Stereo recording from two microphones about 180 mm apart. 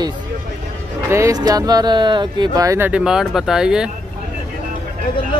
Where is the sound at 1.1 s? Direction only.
20° right (ahead or behind).